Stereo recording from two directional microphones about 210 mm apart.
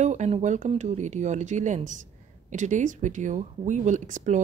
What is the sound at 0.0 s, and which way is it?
Speech, 35° right (ahead or behind).